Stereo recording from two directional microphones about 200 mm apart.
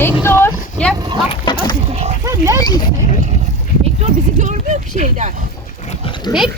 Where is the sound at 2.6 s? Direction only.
20° left (ahead or behind).